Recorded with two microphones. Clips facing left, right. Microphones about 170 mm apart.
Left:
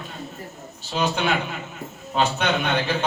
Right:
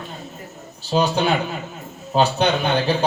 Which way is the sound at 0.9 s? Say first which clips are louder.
Right 4 dB; 35° right (ahead or behind).